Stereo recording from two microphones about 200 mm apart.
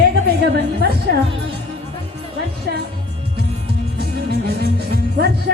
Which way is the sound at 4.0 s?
50° right (ahead or behind).